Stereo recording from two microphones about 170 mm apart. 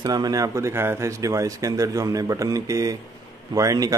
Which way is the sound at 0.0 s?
25° right (ahead or behind).